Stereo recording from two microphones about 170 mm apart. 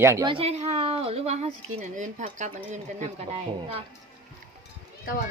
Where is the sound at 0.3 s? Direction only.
35° right (ahead or behind).